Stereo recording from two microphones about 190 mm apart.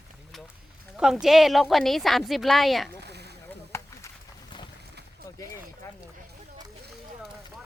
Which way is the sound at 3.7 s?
15° left (ahead or behind).